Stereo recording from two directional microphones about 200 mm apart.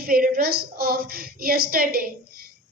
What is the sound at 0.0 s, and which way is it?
A woman's voice, 45° right (ahead or behind).